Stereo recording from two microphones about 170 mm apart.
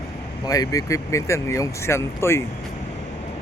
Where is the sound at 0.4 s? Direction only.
20° left (ahead or behind).